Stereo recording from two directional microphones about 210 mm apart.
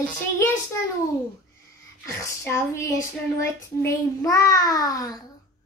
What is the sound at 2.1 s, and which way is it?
A child's voice, 15° left (ahead or behind).